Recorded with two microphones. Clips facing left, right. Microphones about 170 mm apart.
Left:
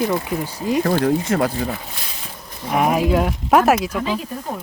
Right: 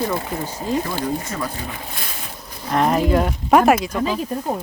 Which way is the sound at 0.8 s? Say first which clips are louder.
Left 7 dB; 60° left (ahead or behind).